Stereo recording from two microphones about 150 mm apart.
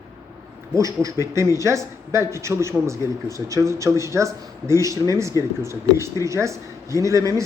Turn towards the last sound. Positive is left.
turn(degrees=-20)  # may be behind; listen again after turning